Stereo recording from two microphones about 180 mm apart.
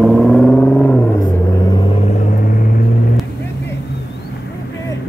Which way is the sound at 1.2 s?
25° left (ahead or behind).